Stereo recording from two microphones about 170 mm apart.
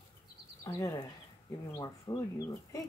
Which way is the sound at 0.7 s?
20° left (ahead or behind).